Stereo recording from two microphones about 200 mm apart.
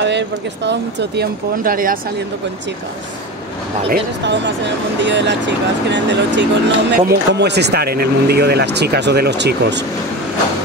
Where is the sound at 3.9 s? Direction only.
60° right (ahead or behind).